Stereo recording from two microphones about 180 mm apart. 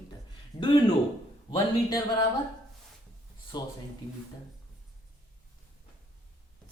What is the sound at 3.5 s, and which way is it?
Mantra, 25° left (ahead or behind).